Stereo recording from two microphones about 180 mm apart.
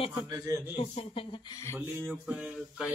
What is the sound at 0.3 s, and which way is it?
Speech, 15° right (ahead or behind).